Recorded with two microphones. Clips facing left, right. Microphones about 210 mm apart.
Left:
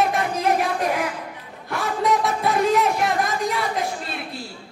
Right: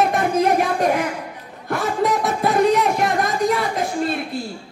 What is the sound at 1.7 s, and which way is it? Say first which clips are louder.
Speech: right 2 dB; centre (ahead or behind).